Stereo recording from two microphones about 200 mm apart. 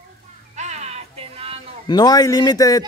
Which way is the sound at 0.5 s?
35° right (ahead or behind).